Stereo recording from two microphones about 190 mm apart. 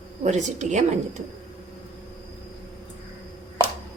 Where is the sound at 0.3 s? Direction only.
40° right (ahead or behind).